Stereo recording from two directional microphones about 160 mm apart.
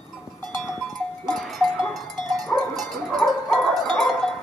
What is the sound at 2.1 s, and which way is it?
Dog, 25° right (ahead or behind).